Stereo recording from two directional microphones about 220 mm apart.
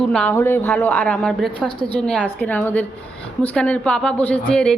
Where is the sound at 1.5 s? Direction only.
25° left (ahead or behind).